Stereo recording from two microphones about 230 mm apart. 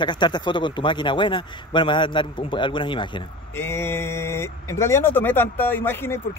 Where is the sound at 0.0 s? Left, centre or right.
Centre.